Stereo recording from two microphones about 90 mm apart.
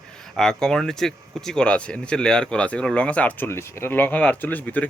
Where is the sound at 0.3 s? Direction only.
5° left (ahead or behind).